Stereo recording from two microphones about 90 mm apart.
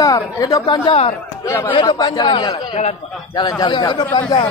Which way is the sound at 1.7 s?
60° left (ahead or behind).